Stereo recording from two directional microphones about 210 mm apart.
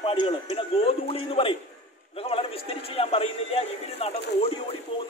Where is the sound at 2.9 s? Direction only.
30° left (ahead or behind).